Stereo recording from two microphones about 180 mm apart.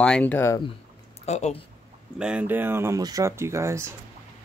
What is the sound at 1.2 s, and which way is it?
Speech, 40° left (ahead or behind).